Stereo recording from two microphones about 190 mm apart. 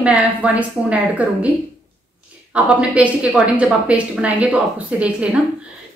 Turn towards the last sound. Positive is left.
turn(degrees=-5)  # may be behind; listen again after turning